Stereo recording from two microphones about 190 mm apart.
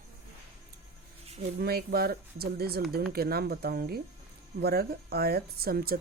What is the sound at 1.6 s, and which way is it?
Speech, 55° right (ahead or behind).